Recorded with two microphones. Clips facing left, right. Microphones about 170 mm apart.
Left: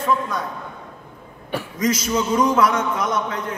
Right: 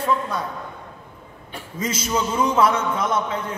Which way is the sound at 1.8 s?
25° right (ahead or behind).